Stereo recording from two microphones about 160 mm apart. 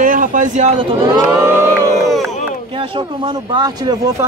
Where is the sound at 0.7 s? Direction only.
30° right (ahead or behind).